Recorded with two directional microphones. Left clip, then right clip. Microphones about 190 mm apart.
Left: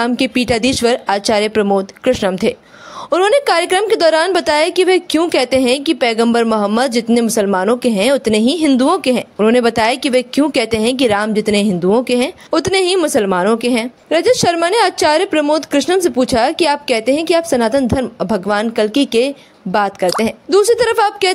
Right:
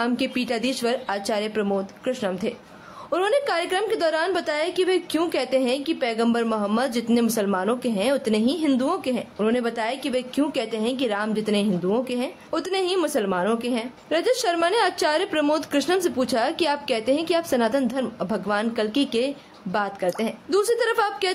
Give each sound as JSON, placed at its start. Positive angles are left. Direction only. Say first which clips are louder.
{"t": 0.0, "sound": "a woman's voice", "louder": "left 9 dB", "side_deg": 40}